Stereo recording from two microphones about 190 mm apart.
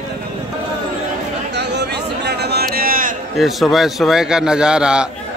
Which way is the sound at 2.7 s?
50° right (ahead or behind).